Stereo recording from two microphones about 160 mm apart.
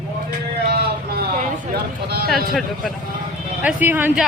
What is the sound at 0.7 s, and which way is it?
A man's voice, 80° right.